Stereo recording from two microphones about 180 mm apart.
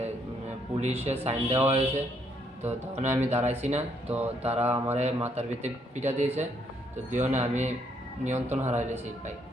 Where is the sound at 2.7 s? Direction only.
35° right (ahead or behind).